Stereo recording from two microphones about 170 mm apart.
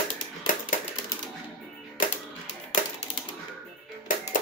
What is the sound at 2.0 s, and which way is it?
Music, 55° left (ahead or behind).